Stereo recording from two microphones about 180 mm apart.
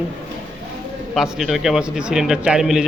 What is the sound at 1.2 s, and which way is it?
A man's voice, centre (ahead or behind).